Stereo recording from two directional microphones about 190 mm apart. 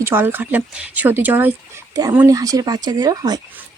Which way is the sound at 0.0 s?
10° right (ahead or behind).